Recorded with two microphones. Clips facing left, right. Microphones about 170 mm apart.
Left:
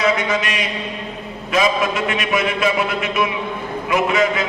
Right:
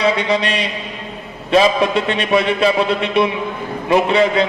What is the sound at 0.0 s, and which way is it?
A man's voice, 30° right (ahead or behind).